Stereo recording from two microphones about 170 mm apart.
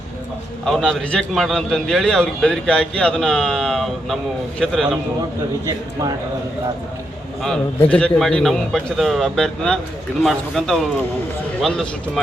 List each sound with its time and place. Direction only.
0.6 s a man's voice: 5° left (ahead or behind)
5.6 s speech: 20° right (ahead or behind)
7.4 s a man's voice: 5° left (ahead or behind)